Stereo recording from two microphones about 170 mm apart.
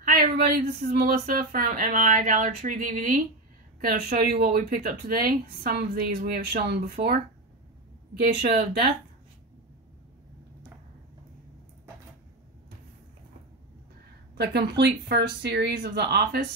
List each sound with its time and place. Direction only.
0.0 s a sound: 60° right (ahead or behind)
0.9 s speech: 55° right (ahead or behind)
8.4 s speech: 70° right (ahead or behind)
14.3 s speech: 75° right (ahead or behind)